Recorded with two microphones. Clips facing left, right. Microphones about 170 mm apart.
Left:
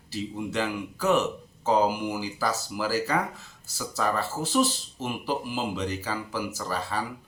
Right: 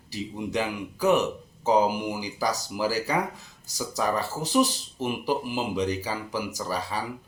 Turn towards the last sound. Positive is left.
turn(degrees=-15)  # may be behind; listen again after turning